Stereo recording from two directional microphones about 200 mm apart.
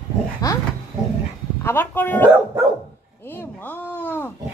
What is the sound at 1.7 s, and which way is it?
A woman's voice, 10° left (ahead or behind).